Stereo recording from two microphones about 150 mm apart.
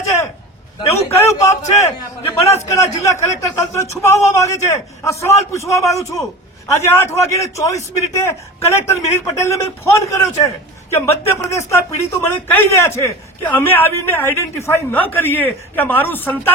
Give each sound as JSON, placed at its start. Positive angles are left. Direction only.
{"t": 1.0, "sound": "a man's voice", "side_deg": 20}